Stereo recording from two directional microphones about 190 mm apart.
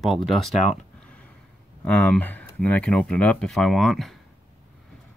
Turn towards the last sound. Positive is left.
turn(degrees=0)  # may be behind; listen again after turning